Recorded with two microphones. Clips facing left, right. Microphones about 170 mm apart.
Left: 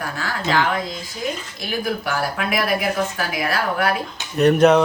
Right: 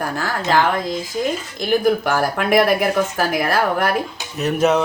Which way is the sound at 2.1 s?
50° right (ahead or behind).